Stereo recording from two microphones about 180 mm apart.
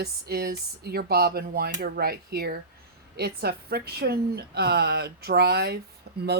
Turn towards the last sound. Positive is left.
turn(degrees=-65)  # may be behind; listen again after turning